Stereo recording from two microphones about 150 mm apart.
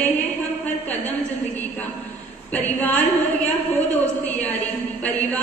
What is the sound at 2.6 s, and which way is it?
A woman's voice, 10° left (ahead or behind).